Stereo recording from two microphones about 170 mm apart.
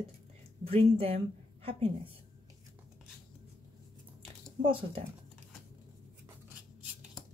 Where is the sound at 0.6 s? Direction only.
35° right (ahead or behind).